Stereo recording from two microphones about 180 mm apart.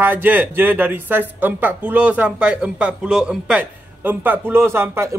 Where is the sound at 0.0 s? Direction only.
10° right (ahead or behind).